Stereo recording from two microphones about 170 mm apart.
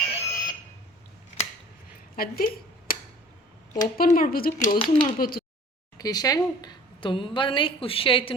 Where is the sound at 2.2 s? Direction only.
60° left (ahead or behind).